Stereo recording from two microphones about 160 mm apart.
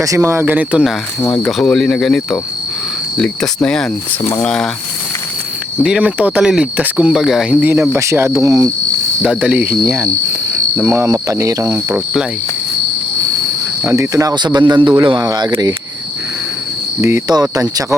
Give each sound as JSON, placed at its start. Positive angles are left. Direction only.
{"t": 0.0, "sound": "speech", "side_deg": -20}
{"t": 1.2, "sound": "speech", "side_deg": 5}
{"t": 5.8, "sound": "speech", "side_deg": -5}
{"t": 9.2, "sound": "speech", "side_deg": -5}
{"t": 10.8, "sound": "speech", "side_deg": -10}
{"t": 13.8, "sound": "speech", "side_deg": -15}
{"t": 17.0, "sound": "speech", "side_deg": -15}